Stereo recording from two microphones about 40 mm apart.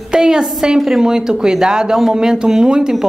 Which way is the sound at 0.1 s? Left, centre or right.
Centre.